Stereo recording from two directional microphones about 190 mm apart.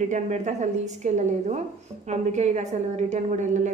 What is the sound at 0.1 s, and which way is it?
A woman's voice, 40° right (ahead or behind).